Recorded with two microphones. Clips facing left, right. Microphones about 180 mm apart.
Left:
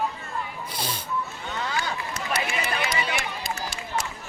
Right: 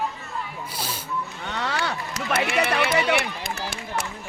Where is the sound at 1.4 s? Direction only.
75° right (ahead or behind).